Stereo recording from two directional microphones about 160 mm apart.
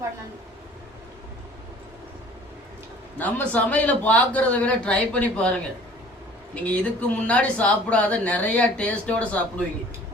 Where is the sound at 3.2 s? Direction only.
10° left (ahead or behind).